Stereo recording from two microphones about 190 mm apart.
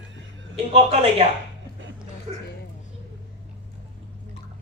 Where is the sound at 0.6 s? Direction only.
30° right (ahead or behind).